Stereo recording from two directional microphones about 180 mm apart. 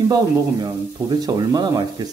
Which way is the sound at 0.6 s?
25° right (ahead or behind).